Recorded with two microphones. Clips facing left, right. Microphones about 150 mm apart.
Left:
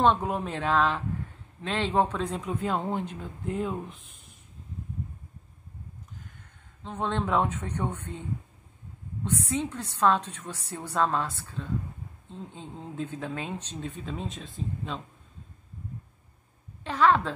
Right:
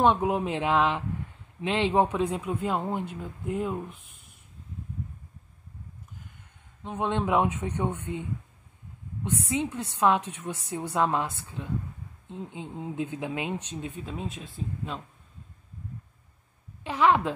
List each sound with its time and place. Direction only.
0.0 s a man's voice: 15° right (ahead or behind)
6.8 s a man's voice: 15° right (ahead or behind)
16.8 s a man's voice: 10° right (ahead or behind)